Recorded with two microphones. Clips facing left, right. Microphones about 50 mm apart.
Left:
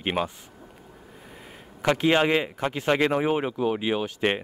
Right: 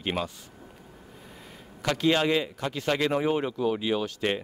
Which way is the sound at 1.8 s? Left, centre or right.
Left.